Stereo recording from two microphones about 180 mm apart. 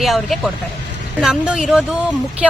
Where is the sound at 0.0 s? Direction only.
Centre (ahead or behind).